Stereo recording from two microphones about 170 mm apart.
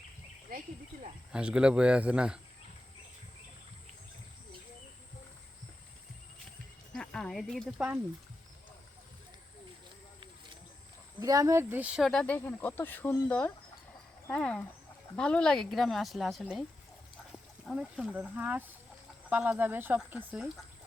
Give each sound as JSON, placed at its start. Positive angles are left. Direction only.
{"t": 1.3, "sound": "speech", "side_deg": -5}
{"t": 6.9, "sound": "speech", "side_deg": 5}
{"t": 11.2, "sound": "speech", "side_deg": -20}
{"t": 12.2, "sound": "speech", "side_deg": 10}